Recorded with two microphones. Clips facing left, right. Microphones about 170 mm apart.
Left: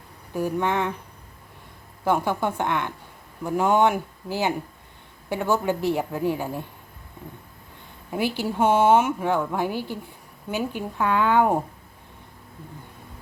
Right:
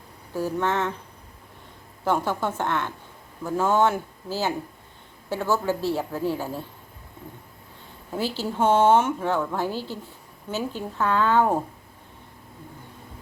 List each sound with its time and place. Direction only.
0.3 s a woman's voice: 15° left (ahead or behind)
2.0 s a woman's voice: 10° left (ahead or behind)
8.1 s a woman's voice: 15° left (ahead or behind)